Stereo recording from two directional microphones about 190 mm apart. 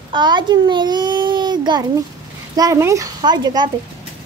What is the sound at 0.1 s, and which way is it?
A child's voice, 25° right (ahead or behind).